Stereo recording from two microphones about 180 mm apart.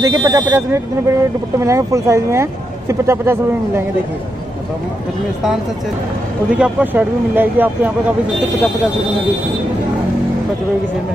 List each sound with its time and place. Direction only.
0.0 s speech: 20° right (ahead or behind)
6.6 s speech: 10° right (ahead or behind)